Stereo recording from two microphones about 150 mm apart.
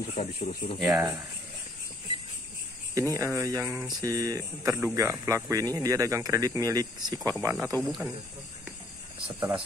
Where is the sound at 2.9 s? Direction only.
20° right (ahead or behind).